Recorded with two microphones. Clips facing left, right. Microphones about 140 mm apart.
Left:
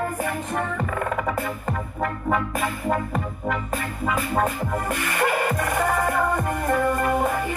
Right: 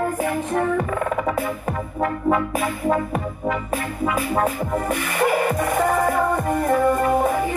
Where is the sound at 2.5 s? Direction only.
10° right (ahead or behind).